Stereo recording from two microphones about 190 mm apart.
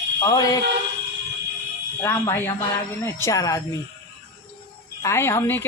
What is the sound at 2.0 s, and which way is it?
A woman's voice, 15° left (ahead or behind).